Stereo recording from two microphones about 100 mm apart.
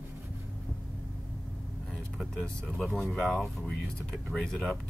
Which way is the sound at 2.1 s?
5° left (ahead or behind).